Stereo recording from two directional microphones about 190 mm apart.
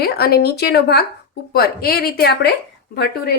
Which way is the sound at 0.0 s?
55° left (ahead or behind).